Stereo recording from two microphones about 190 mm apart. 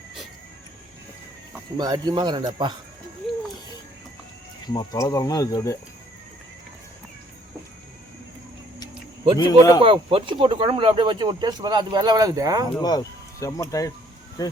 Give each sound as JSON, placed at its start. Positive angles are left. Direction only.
{"t": 1.8, "sound": "speech", "side_deg": -20}
{"t": 4.6, "sound": "speech", "side_deg": 20}
{"t": 9.4, "sound": "speech", "side_deg": 20}
{"t": 9.8, "sound": "speech", "side_deg": -30}
{"t": 12.8, "sound": "speech", "side_deg": 20}